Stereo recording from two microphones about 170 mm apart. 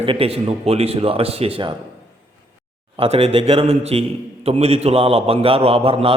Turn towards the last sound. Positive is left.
turn(degrees=-35)  # may be behind; listen again after turning